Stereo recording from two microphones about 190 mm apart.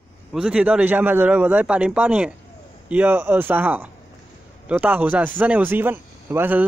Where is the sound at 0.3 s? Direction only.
5° right (ahead or behind).